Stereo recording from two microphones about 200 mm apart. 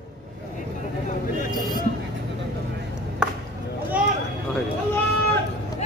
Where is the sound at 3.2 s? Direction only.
5° right (ahead or behind).